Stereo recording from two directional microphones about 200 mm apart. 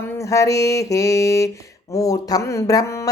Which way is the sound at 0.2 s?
15° left (ahead or behind).